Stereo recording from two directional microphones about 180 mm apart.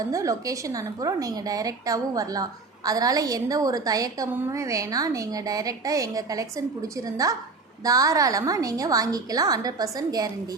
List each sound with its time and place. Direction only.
0.1 s a woman's voice: 20° right (ahead or behind)